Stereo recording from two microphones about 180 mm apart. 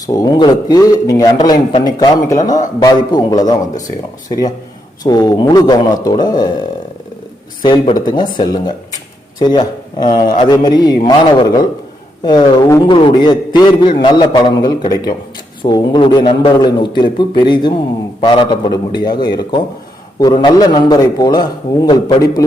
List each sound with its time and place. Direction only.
0.0 s a man's voice: 20° left (ahead or behind)
5.0 s a man's voice: 20° left (ahead or behind)
7.6 s a man's voice: 25° left (ahead or behind)